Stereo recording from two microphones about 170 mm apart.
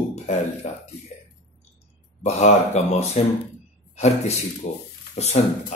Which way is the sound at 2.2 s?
40° left (ahead or behind).